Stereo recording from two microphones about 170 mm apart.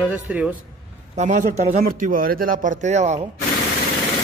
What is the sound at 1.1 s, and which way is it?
Speech, 45° right (ahead or behind).